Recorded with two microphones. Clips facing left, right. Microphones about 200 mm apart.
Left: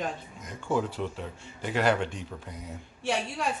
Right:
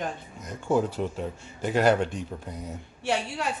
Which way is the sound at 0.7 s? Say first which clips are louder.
Right 4 dB; 40° right (ahead or behind).